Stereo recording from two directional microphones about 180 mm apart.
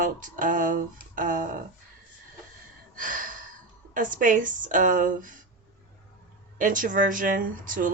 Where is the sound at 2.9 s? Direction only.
50° right (ahead or behind).